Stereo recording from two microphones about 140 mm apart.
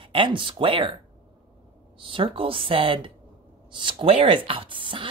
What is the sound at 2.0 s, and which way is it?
Speech, 40° right (ahead or behind).